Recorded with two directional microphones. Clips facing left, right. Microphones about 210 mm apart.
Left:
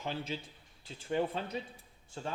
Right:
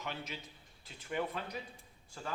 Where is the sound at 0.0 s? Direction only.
30° left (ahead or behind).